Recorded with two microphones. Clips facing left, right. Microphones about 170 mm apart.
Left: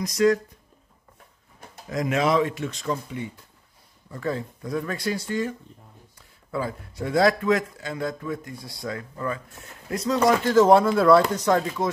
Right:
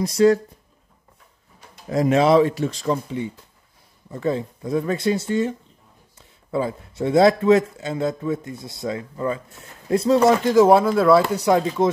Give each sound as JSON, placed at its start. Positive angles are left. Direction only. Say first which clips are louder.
{"t": 0.0, "sound": "speech", "louder": "right 4 dB", "side_deg": -30}
{"t": 1.9, "sound": "speech", "louder": "right 6 dB", "side_deg": -30}
{"t": 4.1, "sound": "speech", "louder": "right 5 dB", "side_deg": -20}
{"t": 10.4, "sound": "speech", "louder": "right 2 dB", "side_deg": -10}
{"t": 11.4, "sound": "speech", "louder": "right 4 dB", "side_deg": -20}